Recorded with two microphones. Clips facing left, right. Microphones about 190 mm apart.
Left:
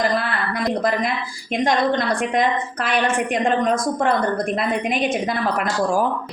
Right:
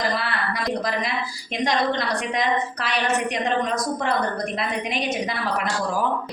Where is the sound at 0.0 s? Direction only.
50° left (ahead or behind).